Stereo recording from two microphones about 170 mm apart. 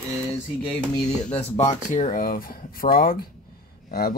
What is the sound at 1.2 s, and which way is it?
Speech, 40° left (ahead or behind).